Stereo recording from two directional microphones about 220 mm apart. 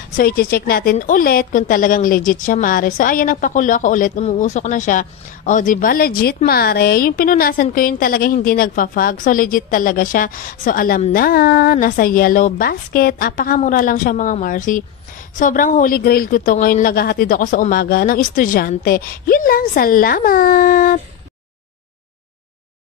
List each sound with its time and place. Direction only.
0.1 s a woman's voice: 40° left (ahead or behind)